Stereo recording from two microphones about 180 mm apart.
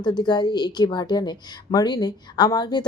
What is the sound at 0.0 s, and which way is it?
A woman's voice, 25° left (ahead or behind).